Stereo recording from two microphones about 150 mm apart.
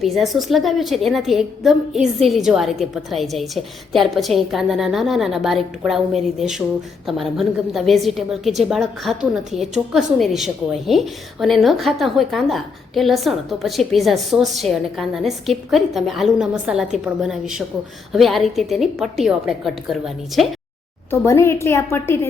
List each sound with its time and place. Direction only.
0.0 s a woman's voice: centre (ahead or behind)
21.1 s a woman's voice: 20° left (ahead or behind)